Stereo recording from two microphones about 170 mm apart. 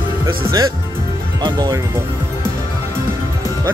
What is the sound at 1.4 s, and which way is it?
Speech, 25° right (ahead or behind).